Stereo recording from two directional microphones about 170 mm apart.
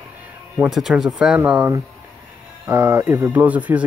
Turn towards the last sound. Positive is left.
turn(degrees=-10)  # may be behind; listen again after turning